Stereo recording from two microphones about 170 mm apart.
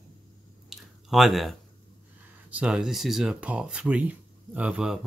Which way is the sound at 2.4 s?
5° right (ahead or behind).